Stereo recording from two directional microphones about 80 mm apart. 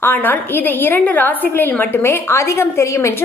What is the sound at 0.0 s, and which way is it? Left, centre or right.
A woman's voice, left.